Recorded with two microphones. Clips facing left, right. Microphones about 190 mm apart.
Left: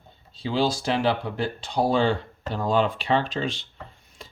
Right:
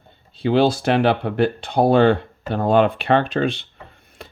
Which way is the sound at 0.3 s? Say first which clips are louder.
Right 7 dB; 60° right (ahead or behind).